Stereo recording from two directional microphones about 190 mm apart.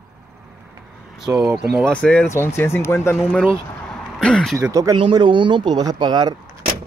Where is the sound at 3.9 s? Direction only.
5° left (ahead or behind).